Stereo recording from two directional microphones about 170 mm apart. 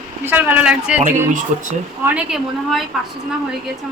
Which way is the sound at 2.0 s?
5° right (ahead or behind).